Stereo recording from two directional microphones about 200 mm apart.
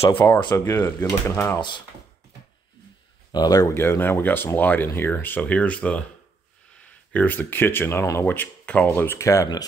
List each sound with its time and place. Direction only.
0.0 s speech: 25° left (ahead or behind)
3.3 s speech: 20° left (ahead or behind)